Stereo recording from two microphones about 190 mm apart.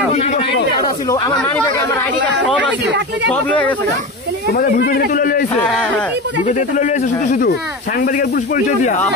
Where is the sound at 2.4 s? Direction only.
5° left (ahead or behind).